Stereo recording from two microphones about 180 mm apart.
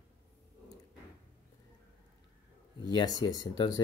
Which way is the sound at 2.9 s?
25° left (ahead or behind).